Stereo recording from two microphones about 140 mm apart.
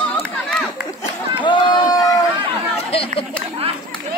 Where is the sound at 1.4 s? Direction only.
35° left (ahead or behind).